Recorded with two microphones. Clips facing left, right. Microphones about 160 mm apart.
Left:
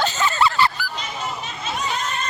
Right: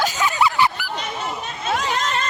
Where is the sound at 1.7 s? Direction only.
90° right.